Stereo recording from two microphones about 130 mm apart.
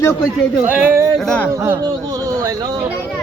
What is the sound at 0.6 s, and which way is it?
Speech, 15° right (ahead or behind).